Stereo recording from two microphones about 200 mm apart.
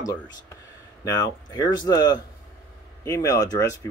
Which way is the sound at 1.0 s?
15° left (ahead or behind).